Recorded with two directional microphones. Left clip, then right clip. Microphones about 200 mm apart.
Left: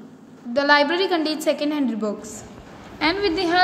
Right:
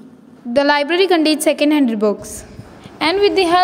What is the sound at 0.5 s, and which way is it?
A woman's voice, 40° right (ahead or behind).